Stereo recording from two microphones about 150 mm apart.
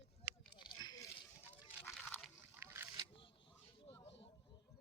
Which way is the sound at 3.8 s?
40° left (ahead or behind).